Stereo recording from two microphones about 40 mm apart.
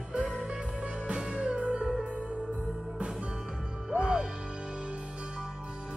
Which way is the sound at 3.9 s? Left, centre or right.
Centre.